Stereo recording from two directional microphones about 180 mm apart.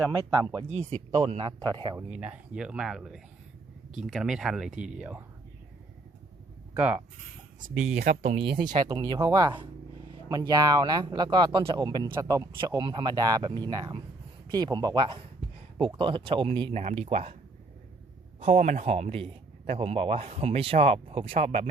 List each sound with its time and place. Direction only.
0.1 s speech: 20° right (ahead or behind)
0.7 s a man's voice: 35° right (ahead or behind)
2.0 s speech: 5° right (ahead or behind)
6.7 s speech: 5° right (ahead or behind)
7.6 s speech: 50° right (ahead or behind)
8.6 s a man's voice: 25° right (ahead or behind)
18.3 s a man's voice: 35° right (ahead or behind)